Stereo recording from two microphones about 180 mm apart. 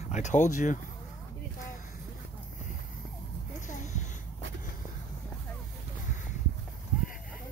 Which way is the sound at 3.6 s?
40° left (ahead or behind).